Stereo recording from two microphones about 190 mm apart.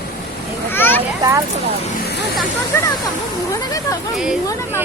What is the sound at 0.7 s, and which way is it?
Speech, 10° left (ahead or behind).